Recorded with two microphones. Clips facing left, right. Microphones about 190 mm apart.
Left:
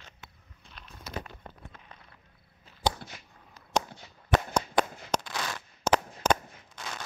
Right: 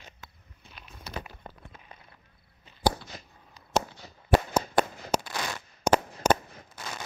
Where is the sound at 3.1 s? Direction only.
40° right (ahead or behind).